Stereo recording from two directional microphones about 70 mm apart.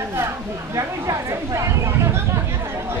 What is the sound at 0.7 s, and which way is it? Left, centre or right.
Speech, right.